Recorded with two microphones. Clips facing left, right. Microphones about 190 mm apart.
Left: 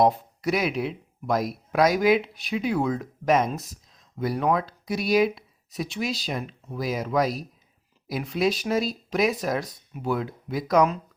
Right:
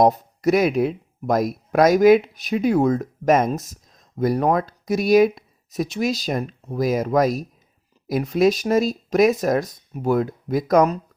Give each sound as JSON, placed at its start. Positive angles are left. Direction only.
{"t": 0.0, "sound": "speech", "side_deg": -45}